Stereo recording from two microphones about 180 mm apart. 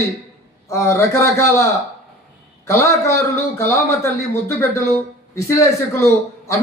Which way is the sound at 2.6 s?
15° left (ahead or behind).